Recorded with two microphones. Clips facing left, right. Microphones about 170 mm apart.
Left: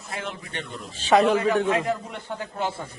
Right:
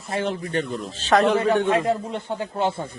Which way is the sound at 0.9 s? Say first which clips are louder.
Left 1 dB; 10° left (ahead or behind).